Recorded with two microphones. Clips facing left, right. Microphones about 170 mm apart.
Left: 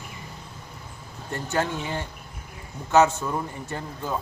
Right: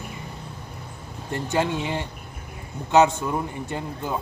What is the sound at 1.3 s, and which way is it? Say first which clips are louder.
A man's voice: right 3 dB; 15° right (ahead or behind).